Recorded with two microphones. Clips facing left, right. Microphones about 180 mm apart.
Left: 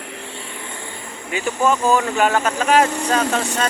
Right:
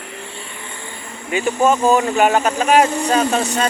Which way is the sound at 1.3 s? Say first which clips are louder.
Right 3 dB; 20° right (ahead or behind).